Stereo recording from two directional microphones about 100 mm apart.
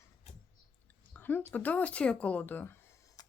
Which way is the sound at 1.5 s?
15° left (ahead or behind).